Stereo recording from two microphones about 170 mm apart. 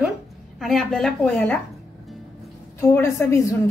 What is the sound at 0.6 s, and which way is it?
A woman's voice, centre (ahead or behind).